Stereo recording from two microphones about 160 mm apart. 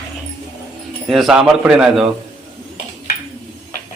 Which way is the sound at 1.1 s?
Centre (ahead or behind).